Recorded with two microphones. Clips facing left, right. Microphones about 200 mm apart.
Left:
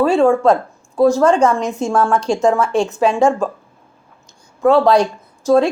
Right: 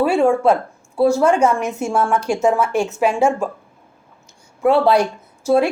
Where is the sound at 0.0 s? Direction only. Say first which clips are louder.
Left 2 dB; 10° right (ahead or behind).